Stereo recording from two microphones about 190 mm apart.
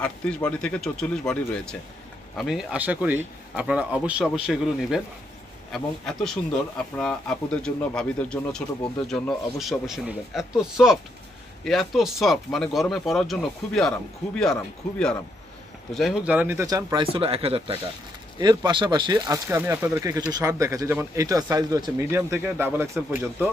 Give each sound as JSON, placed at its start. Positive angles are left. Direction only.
{"t": 0.0, "sound": "speech", "side_deg": 5}